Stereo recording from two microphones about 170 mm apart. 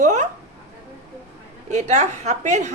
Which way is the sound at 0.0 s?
45° right (ahead or behind).